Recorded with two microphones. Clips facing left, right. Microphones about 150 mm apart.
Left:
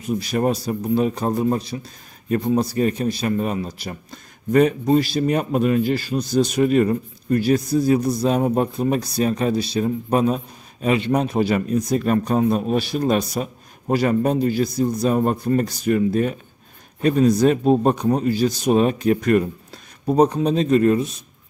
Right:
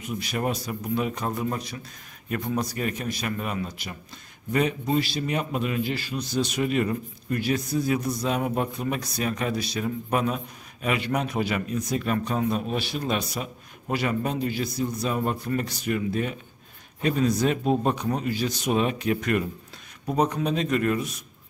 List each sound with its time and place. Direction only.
0.0 s a man's voice: 35° left (ahead or behind)